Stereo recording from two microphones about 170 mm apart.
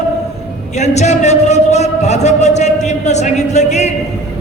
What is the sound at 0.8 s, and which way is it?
Speech, 40° left (ahead or behind).